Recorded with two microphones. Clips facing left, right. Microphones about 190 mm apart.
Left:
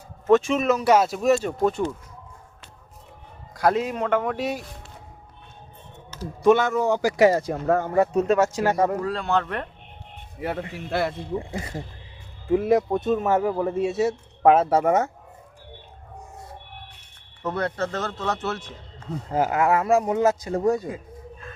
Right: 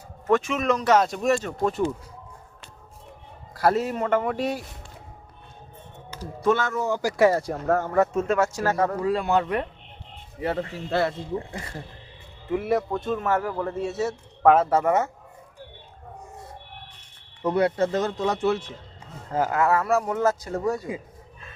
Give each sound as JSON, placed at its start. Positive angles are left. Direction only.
{"t": 0.3, "sound": "speech", "side_deg": 25}
{"t": 0.6, "sound": "a man's voice", "side_deg": 5}
{"t": 3.5, "sound": "a man's voice", "side_deg": -5}
{"t": 4.4, "sound": "a man's voice", "side_deg": 5}
{"t": 6.4, "sound": "a man's voice", "side_deg": 15}
{"t": 9.0, "sound": "speech", "side_deg": -10}
{"t": 10.4, "sound": "a man's voice", "side_deg": 10}
{"t": 17.4, "sound": "speech", "side_deg": -15}
{"t": 19.3, "sound": "a man's voice", "side_deg": 15}